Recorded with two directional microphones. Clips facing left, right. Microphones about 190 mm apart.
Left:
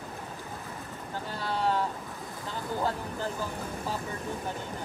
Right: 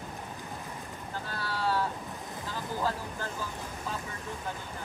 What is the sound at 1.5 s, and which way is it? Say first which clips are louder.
Speech: left 2 dB; 20° left (ahead or behind).